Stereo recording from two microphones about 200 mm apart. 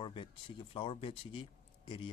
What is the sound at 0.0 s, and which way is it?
Speech, 25° left (ahead or behind).